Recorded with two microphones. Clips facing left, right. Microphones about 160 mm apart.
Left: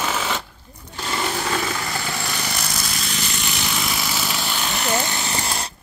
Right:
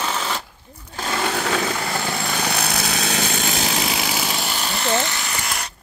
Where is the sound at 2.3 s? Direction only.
65° right (ahead or behind); by 4.0 s 35° right (ahead or behind).